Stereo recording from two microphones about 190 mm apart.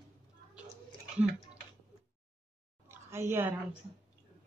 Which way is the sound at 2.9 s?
15° right (ahead or behind).